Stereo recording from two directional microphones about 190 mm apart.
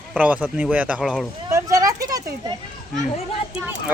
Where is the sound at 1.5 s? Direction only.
15° right (ahead or behind).